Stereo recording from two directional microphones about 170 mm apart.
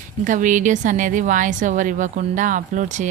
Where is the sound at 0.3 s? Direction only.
50° right (ahead or behind).